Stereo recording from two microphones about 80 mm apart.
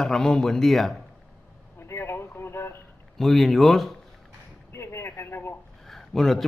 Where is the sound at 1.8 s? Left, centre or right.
Left.